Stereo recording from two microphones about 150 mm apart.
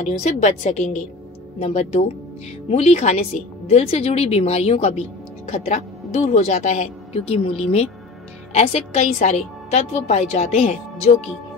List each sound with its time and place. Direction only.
0.0 s a woman's voice: 50° left (ahead or behind)
1.6 s a woman's voice: 45° left (ahead or behind)
6.2 s a woman's voice: 50° left (ahead or behind)